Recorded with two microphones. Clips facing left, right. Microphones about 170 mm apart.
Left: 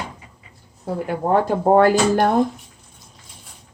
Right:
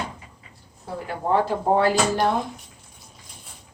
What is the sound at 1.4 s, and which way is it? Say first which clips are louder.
Speech: left 6 dB; 50° left (ahead or behind).